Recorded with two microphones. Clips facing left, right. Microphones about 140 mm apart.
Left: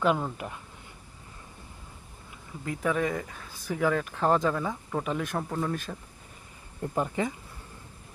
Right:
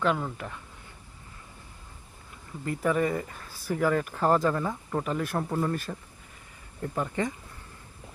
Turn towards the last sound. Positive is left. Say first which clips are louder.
# left 2 dB
turn(degrees=20)  # may be behind; listen again after turning